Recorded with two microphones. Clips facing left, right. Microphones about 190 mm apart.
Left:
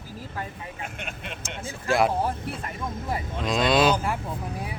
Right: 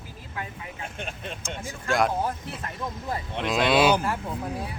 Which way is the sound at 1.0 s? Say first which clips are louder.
Right 1 dB; 35° right (ahead or behind).